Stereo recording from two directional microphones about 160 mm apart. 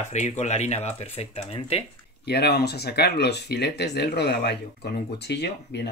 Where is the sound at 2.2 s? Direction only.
90° left.